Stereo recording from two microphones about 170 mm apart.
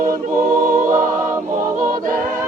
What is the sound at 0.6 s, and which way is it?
Choir, 50° right (ahead or behind).